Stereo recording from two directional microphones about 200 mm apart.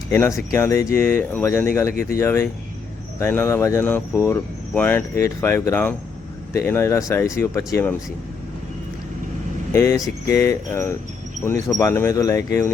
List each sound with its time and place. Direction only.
0.1 s speech: 15° left (ahead or behind)
9.7 s speech: 15° left (ahead or behind)